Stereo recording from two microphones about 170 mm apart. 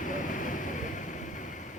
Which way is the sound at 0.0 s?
50° left (ahead or behind).